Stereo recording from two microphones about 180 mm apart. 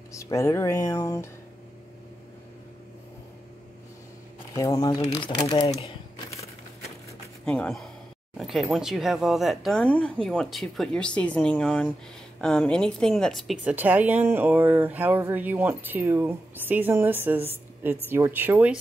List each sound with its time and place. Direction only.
0.2 s speech: 15° left (ahead or behind)
4.6 s speech: 20° left (ahead or behind)
7.4 s a woman's voice: 5° left (ahead or behind)